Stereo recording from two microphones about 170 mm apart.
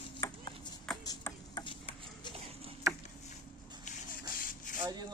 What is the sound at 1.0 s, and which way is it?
Music, 25° left (ahead or behind).